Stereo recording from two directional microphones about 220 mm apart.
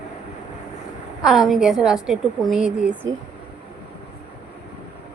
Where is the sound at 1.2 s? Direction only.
Centre (ahead or behind).